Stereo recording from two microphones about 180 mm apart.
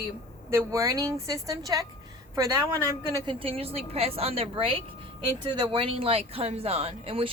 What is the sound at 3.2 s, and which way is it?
A woman's voice, 30° right (ahead or behind).